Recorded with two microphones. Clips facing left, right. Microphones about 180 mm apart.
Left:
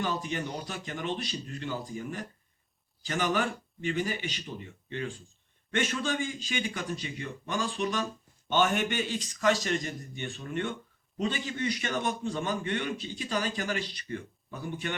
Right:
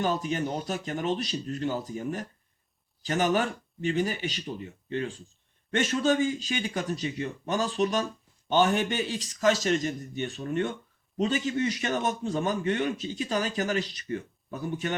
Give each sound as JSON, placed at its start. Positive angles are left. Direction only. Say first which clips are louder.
{"t": 0.0, "sound": "a man's voice", "louder": "right 4 dB", "side_deg": -45}